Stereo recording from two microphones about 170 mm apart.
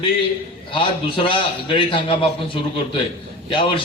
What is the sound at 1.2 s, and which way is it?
A man's voice, 30° left (ahead or behind).